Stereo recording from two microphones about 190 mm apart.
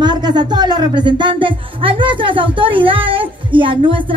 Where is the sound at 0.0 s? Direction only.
20° right (ahead or behind).